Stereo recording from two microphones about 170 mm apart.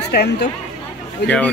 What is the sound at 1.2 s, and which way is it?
Speech, 10° left (ahead or behind).